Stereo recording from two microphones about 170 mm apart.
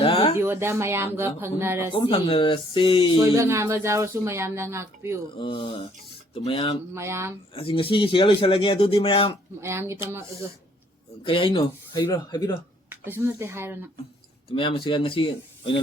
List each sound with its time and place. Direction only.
0.0 s a sound: 35° left (ahead or behind)
0.3 s speech: 15° right (ahead or behind)
1.9 s speech: 30° left (ahead or behind)
3.2 s speech: 15° right (ahead or behind)
5.4 s speech: 30° left (ahead or behind)
6.9 s speech: 15° right (ahead or behind)
7.5 s speech: 30° left (ahead or behind)
9.6 s speech: 15° right (ahead or behind)
11.2 s speech: 30° left (ahead or behind)
12.9 s speech: 10° right (ahead or behind)
14.5 s speech: 30° left (ahead or behind)